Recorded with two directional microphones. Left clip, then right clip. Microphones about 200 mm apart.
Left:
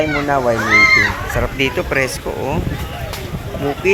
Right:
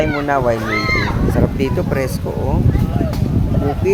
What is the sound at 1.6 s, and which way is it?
Speech, 20° right (ahead or behind).